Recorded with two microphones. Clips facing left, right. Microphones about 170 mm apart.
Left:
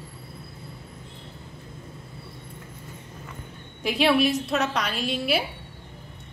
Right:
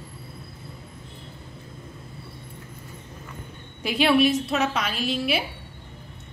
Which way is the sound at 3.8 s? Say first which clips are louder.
Right 1 dB; centre (ahead or behind).